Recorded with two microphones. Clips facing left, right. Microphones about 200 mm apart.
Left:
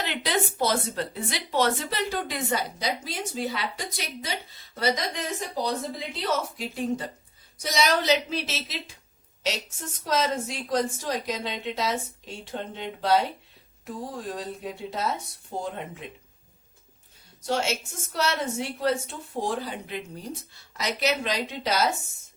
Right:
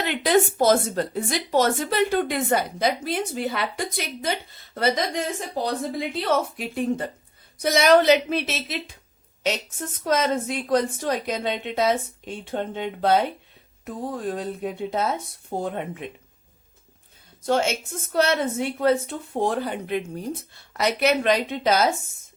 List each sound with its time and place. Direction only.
0.0 s a woman's voice: 50° right (ahead or behind)
17.4 s a woman's voice: 55° right (ahead or behind)